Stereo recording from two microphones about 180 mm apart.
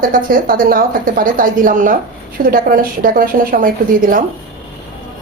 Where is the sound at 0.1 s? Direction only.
50° right (ahead or behind).